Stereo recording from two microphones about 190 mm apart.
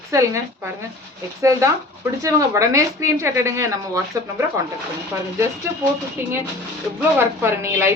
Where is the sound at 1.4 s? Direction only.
15° right (ahead or behind).